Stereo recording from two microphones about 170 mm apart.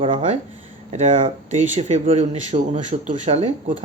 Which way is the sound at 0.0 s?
35° right (ahead or behind).